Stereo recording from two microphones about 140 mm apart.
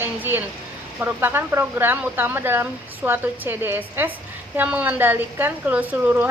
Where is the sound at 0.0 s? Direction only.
15° right (ahead or behind).